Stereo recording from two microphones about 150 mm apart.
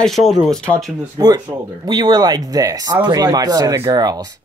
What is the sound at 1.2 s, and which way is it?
Speech, 25° right (ahead or behind).